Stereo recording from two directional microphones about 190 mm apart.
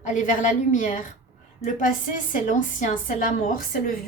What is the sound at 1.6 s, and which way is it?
Speech, 15° left (ahead or behind).